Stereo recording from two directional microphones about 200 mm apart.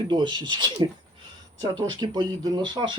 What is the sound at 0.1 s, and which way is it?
Speech, 20° right (ahead or behind).